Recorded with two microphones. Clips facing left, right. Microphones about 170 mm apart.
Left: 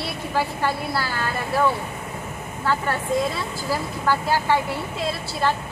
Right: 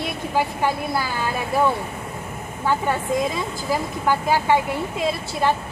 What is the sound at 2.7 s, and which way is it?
Speech, 15° right (ahead or behind).